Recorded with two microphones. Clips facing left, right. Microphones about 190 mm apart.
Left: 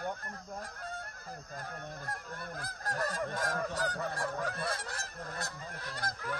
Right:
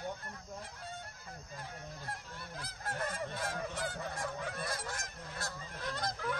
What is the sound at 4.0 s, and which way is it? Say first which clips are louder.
Goose: left 4 dB; 65° left (ahead or behind).